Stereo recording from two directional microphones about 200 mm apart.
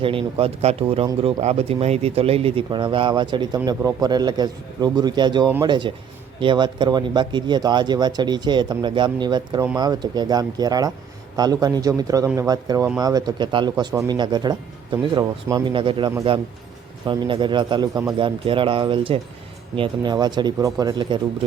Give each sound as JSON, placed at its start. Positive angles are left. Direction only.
{"t": 0.0, "sound": "speech", "side_deg": -25}